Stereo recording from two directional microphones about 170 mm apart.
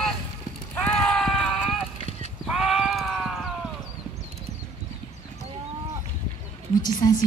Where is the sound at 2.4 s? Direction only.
Centre (ahead or behind).